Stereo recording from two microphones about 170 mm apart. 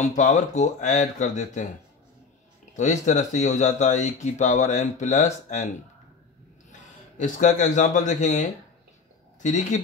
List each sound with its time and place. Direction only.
0.0 s speech: 45° left (ahead or behind)
2.7 s a man's voice: 45° left (ahead or behind)